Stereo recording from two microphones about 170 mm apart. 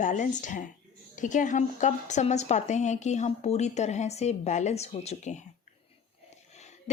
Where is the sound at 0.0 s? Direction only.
45° left (ahead or behind).